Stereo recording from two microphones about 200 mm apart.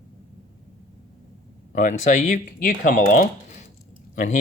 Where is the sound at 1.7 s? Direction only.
35° left (ahead or behind).